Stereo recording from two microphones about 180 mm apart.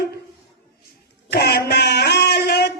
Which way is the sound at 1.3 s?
65° left (ahead or behind).